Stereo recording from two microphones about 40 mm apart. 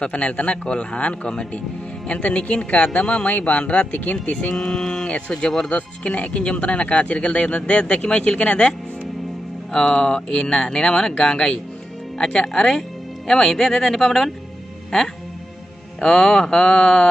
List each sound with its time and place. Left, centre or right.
0.0 s speech: left
4.6 s speech: centre
5.7 s speech: left
9.7 s speech: left